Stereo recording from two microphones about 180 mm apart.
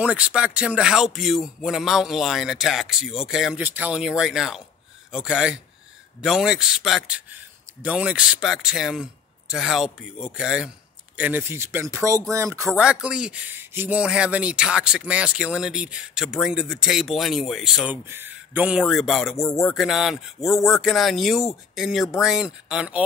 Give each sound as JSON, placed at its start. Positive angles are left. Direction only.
{"t": 0.0, "sound": "a man's voice", "side_deg": -5}
{"t": 12.8, "sound": "speech", "side_deg": -5}
{"t": 18.0, "sound": "a man's voice", "side_deg": -10}
{"t": 19.3, "sound": "speech", "side_deg": 15}
{"t": 19.6, "sound": "speech", "side_deg": 0}